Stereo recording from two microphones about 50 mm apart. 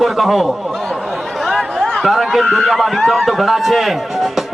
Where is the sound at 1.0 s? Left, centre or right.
Centre.